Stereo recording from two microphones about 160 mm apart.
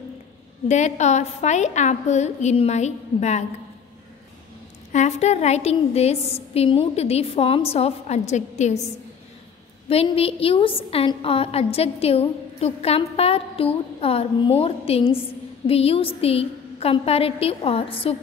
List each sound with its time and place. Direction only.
0.7 s a woman's voice: 45° left (ahead or behind)
4.9 s a woman's voice: 45° left (ahead or behind)
9.8 s a woman's voice: 40° left (ahead or behind)